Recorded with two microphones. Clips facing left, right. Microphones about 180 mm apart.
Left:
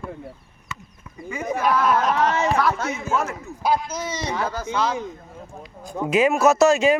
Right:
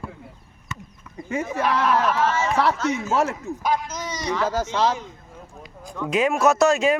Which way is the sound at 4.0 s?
25° left (ahead or behind).